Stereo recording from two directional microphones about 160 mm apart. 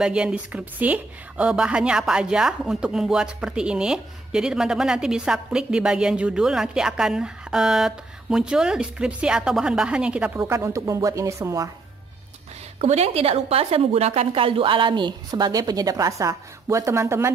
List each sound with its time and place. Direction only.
0.0 s a woman's voice: 5° right (ahead or behind)
12.7 s a woman's voice: 40° right (ahead or behind); by 17.3 s 15° right (ahead or behind)